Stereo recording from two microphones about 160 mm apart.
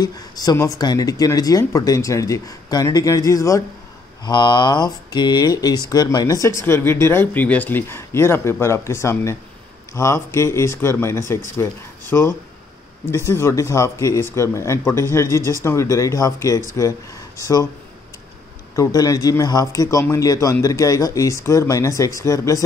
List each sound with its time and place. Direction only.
0.0 s speech: 25° left (ahead or behind)
18.8 s speech: 20° left (ahead or behind)